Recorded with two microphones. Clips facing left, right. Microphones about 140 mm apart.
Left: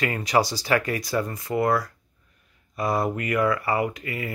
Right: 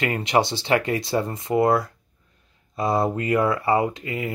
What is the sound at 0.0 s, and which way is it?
Speech, 25° right (ahead or behind).